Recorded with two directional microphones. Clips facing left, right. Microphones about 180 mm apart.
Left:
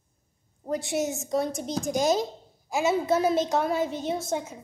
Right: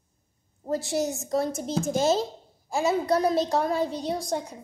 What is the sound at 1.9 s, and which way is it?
Speech, 15° left (ahead or behind).